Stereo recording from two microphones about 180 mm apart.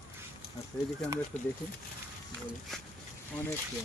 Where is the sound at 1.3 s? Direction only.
40° left (ahead or behind).